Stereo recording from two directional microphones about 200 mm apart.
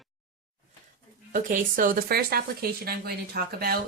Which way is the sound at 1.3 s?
40° right (ahead or behind).